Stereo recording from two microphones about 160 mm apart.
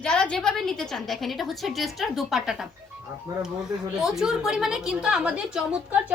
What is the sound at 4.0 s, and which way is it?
A woman's voice, 5° right (ahead or behind).